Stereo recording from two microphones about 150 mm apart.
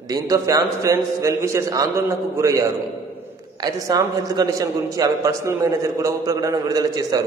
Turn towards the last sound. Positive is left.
turn(degrees=-25)  # may be behind; listen again after turning